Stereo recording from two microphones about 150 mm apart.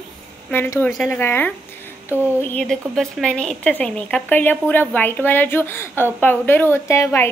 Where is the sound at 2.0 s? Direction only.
15° right (ahead or behind).